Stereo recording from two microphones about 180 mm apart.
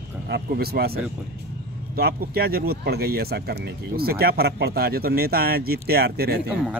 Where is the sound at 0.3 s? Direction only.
60° right (ahead or behind).